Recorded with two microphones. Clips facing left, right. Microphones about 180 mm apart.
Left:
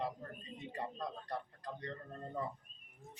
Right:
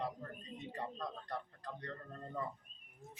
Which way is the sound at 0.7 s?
10° left (ahead or behind).